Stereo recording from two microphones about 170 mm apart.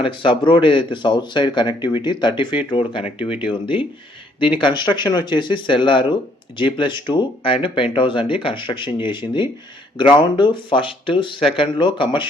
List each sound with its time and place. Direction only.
0.0 s speech: 30° left (ahead or behind)